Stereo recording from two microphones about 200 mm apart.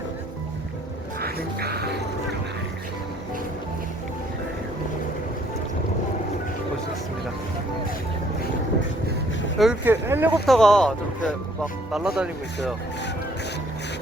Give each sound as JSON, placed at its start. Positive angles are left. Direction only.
{"t": 1.2, "sound": "music", "side_deg": -50}
{"t": 9.6, "sound": "speech", "side_deg": -5}
{"t": 10.4, "sound": "speech", "side_deg": 0}